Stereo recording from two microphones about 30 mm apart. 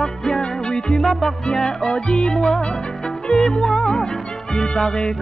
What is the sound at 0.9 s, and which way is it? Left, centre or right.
Music, centre.